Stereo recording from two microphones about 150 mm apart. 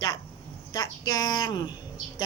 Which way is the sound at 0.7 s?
25° left (ahead or behind).